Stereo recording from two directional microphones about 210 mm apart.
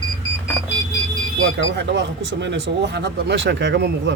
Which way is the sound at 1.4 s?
65° right (ahead or behind).